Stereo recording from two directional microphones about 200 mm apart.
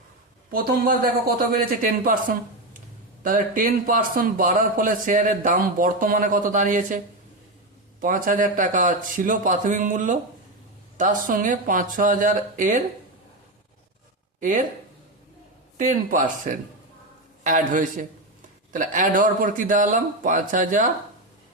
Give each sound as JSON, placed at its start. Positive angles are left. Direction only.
{"t": 0.5, "sound": "a man's voice", "side_deg": -45}
{"t": 8.0, "sound": "a man's voice", "side_deg": -40}
{"t": 14.4, "sound": "a man's voice", "side_deg": -40}
{"t": 15.8, "sound": "a man's voice", "side_deg": -40}